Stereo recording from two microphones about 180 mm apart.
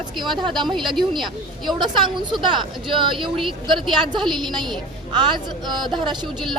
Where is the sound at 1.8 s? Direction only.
25° right (ahead or behind).